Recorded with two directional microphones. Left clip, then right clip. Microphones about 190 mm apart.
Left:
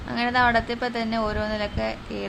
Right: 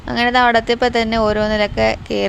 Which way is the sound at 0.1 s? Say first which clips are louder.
Right 7 dB; 40° right (ahead or behind).